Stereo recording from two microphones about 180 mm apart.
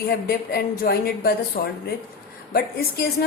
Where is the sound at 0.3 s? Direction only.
60° left (ahead or behind).